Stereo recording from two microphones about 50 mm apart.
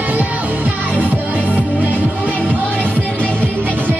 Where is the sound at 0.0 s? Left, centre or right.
Right.